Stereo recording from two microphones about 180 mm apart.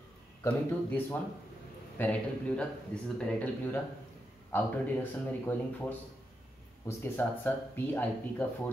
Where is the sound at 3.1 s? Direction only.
5° left (ahead or behind).